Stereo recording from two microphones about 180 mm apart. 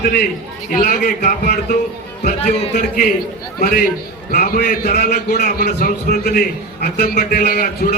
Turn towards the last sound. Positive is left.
turn(degrees=55)  # may be behind; listen again after turning